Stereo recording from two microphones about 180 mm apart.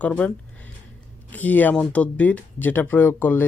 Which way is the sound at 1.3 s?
10° left (ahead or behind).